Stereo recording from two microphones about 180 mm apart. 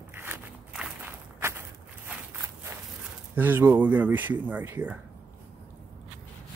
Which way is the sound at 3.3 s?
10° right (ahead or behind).